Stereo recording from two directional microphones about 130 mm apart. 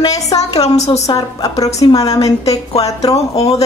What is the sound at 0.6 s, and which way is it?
Speech, 55° left (ahead or behind).